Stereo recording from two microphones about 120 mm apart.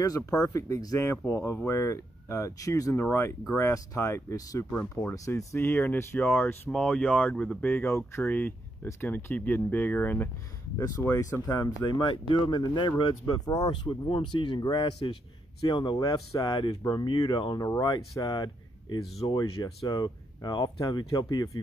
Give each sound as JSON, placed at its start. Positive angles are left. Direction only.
{"t": 0.0, "sound": "speech", "side_deg": 30}
{"t": 4.6, "sound": "speech", "side_deg": 15}
{"t": 5.1, "sound": "speech", "side_deg": 25}
{"t": 11.1, "sound": "speech", "side_deg": 30}
{"t": 16.0, "sound": "speech", "side_deg": 30}